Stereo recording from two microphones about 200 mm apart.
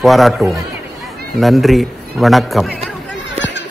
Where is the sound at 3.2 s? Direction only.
65° left (ahead or behind).